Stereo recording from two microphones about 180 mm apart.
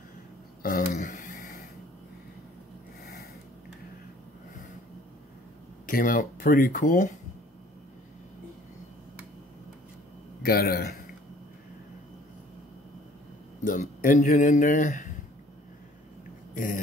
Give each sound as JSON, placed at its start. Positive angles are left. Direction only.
{"t": 0.6, "sound": "a sound", "side_deg": 50}
{"t": 5.9, "sound": "speech", "side_deg": 50}
{"t": 10.4, "sound": "a man's voice", "side_deg": 55}
{"t": 13.7, "sound": "speech", "side_deg": 45}
{"t": 16.5, "sound": "speech", "side_deg": 50}